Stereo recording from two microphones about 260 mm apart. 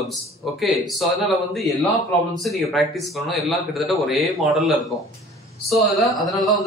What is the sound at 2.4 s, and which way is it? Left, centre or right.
A man's voice, centre.